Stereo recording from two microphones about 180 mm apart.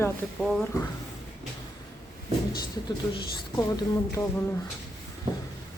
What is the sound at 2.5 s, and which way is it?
A woman's voice, 25° left (ahead or behind).